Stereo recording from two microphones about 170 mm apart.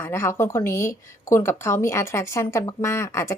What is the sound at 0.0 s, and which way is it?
A woman's voice, 15° left (ahead or behind).